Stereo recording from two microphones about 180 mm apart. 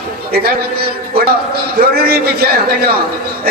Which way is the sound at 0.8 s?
60° right (ahead or behind).